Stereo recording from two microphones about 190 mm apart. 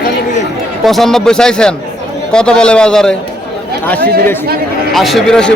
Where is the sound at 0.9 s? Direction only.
Centre (ahead or behind).